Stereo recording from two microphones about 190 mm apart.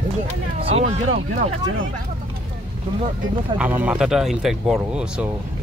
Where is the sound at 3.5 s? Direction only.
5° right (ahead or behind).